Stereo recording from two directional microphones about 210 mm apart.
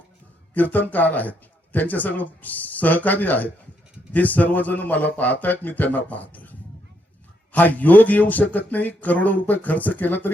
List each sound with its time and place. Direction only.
0.5 s speech: 10° left (ahead or behind)
6.3 s a sound: 10° left (ahead or behind)
7.5 s speech: 10° left (ahead or behind)